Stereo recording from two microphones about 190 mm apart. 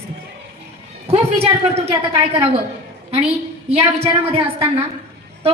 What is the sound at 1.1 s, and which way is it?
A woman's voice, 35° right (ahead or behind).